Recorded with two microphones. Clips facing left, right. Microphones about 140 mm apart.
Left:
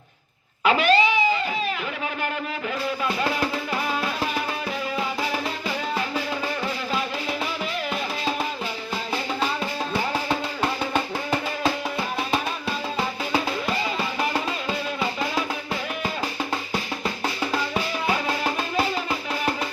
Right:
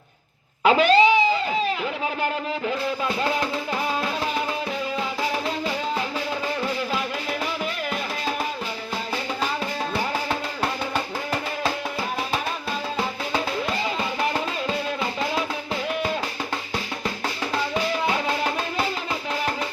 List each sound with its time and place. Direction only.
0.6 s cat: 35° right (ahead or behind)